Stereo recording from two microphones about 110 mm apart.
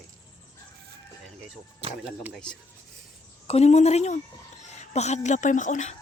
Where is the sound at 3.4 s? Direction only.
80° left.